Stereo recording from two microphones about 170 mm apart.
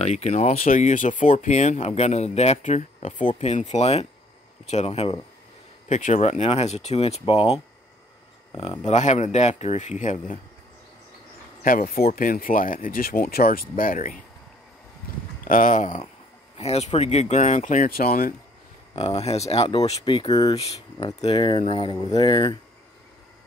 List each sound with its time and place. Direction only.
0.0 s speech: 40° left (ahead or behind)
8.8 s speech: 45° left (ahead or behind)
11.6 s speech: 55° left (ahead or behind)
15.4 s speech: 50° left (ahead or behind)
18.9 s speech: 35° left (ahead or behind)